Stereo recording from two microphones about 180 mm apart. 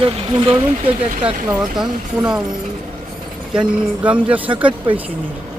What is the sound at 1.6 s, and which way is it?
Speech, 5° right (ahead or behind).